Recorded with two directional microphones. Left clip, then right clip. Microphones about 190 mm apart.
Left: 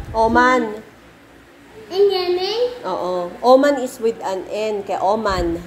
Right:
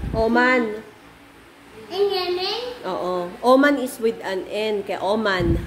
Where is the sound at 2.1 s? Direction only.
15° right (ahead or behind).